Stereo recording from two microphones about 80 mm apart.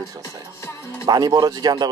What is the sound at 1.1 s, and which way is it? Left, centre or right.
Speech, right.